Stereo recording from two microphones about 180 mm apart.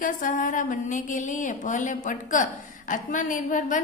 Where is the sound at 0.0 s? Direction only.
45° left (ahead or behind).